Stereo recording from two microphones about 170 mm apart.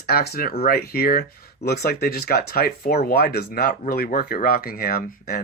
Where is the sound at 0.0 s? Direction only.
65° left (ahead or behind).